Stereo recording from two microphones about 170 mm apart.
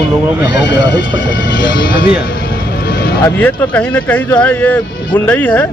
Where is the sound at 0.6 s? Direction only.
90° left.